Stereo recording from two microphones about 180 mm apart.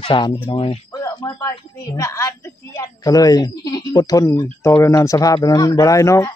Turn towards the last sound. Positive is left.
turn(degrees=15)  # may be behind; listen again after turning